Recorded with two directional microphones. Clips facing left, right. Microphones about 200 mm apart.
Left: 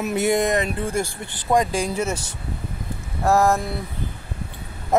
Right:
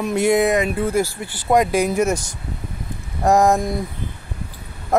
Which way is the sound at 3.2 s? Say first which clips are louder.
Right 3 dB; 15° right (ahead or behind).